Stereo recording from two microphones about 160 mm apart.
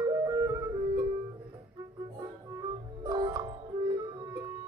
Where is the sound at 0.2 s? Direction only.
20° right (ahead or behind).